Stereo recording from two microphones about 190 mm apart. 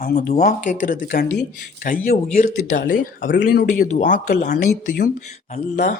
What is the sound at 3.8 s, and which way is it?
Speech, 40° left (ahead or behind).